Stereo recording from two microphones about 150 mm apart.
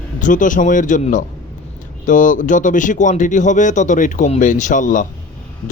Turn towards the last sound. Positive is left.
turn(degrees=60)  # may be behind; listen again after turning